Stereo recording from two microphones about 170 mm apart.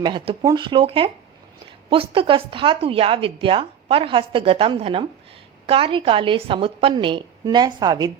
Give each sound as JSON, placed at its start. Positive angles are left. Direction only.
{"t": 0.0, "sound": "a woman's voice", "side_deg": -25}